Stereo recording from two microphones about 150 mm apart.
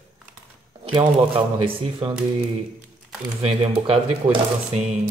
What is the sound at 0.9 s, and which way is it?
Speech, 35° right (ahead or behind).